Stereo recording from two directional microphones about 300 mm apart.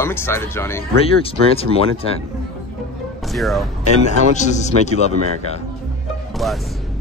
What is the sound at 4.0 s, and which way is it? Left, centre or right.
Speech, left.